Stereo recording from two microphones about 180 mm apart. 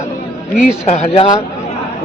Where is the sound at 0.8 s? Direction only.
35° left (ahead or behind).